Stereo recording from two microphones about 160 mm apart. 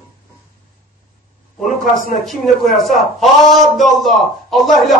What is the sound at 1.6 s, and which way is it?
Speech, 55° left (ahead or behind).